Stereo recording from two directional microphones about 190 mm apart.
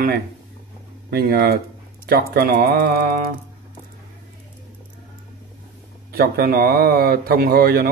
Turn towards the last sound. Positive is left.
turn(degrees=-55)  # may be behind; listen again after turning